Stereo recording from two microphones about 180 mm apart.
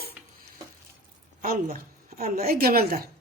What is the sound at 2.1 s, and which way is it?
Speech, 55° right (ahead or behind).